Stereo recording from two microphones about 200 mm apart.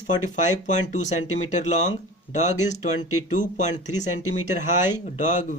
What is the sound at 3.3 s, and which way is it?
Speech, 40° left (ahead or behind).